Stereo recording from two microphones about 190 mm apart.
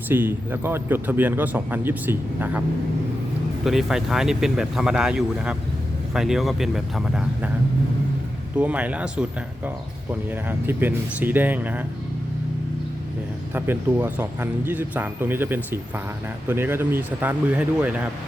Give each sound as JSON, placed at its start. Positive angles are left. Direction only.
{"t": 0.1, "sound": "speech", "side_deg": -10}
{"t": 8.5, "sound": "speech", "side_deg": -10}
{"t": 13.5, "sound": "speech", "side_deg": -10}